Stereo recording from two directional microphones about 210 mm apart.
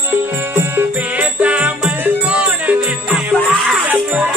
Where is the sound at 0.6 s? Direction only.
10° right (ahead or behind).